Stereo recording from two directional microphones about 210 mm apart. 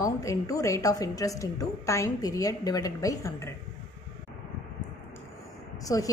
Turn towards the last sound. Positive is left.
turn(degrees=15)  # may be behind; listen again after turning